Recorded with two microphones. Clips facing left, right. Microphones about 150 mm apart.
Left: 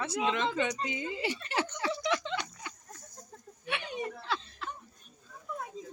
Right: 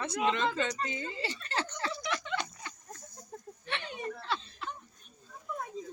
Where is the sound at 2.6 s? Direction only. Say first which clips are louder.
Even; 10° left (ahead or behind).